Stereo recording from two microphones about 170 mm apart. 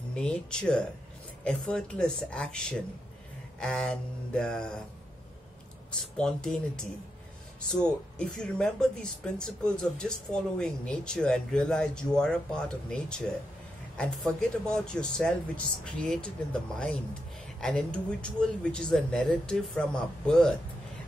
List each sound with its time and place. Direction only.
0.1 s speech: 5° left (ahead or behind)
5.9 s speech: 5° left (ahead or behind)
7.7 s speech: 5° left (ahead or behind)
17.6 s speech: 5° left (ahead or behind)